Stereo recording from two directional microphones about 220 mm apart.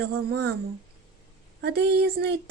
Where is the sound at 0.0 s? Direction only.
45° right (ahead or behind).